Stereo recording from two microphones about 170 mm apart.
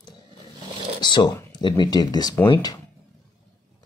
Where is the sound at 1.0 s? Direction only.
25° left (ahead or behind).